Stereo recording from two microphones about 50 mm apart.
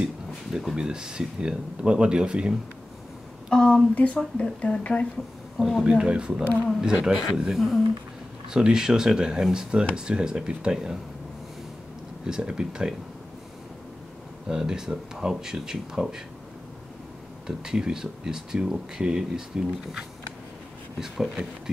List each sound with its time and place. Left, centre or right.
0.0 s speech: centre
3.4 s a woman's voice: centre
3.9 s speech: left
5.9 s speech: centre
7.5 s speech: centre
8.5 s speech: centre
12.3 s speech: centre
14.5 s speech: centre
17.5 s speech: centre